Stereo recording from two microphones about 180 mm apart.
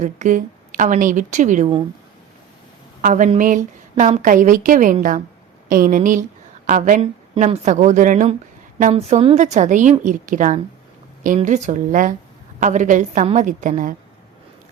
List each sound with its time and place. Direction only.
0.0 s a woman's voice: 45° right (ahead or behind)
3.0 s a woman's voice: 45° right (ahead or behind)